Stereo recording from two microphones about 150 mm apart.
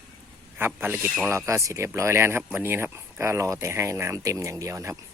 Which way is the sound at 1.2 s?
20° right (ahead or behind).